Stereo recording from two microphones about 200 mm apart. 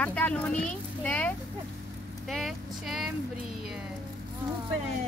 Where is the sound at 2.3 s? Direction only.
Centre (ahead or behind).